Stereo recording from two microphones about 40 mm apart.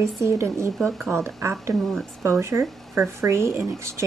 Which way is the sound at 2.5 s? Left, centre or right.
Right.